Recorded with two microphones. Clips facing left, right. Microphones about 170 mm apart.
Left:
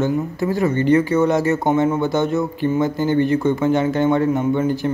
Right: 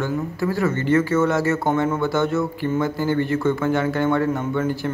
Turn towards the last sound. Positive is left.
turn(degrees=20)  # may be behind; listen again after turning